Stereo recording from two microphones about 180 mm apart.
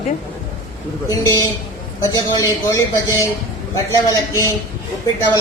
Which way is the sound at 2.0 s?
20° left (ahead or behind).